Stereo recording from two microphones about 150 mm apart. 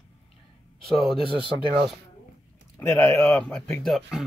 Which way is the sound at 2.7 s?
15° left (ahead or behind).